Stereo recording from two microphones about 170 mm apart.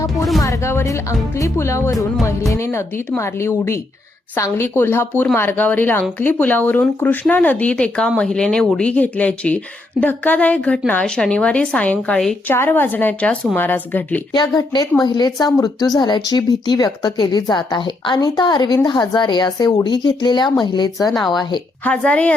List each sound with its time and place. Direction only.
0.4 s a woman's voice: 15° left (ahead or behind)
14.3 s speech: 25° left (ahead or behind)
21.1 s speech: centre (ahead or behind)